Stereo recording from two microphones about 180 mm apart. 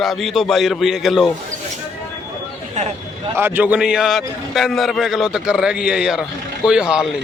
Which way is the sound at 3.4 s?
10° right (ahead or behind).